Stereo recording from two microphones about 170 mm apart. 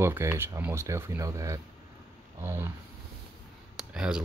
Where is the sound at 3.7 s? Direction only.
5° right (ahead or behind).